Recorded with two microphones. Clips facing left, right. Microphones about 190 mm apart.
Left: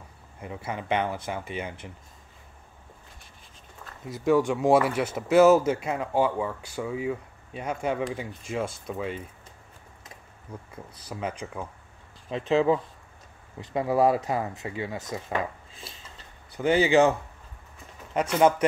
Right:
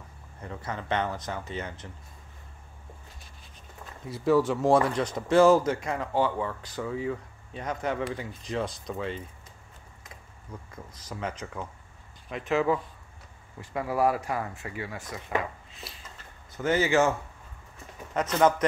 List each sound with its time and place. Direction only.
0.4 s speech: 10° left (ahead or behind)
4.1 s speech: centre (ahead or behind)
10.5 s speech: 10° left (ahead or behind)
12.3 s speech: 25° left (ahead or behind)
16.5 s speech: 15° left (ahead or behind)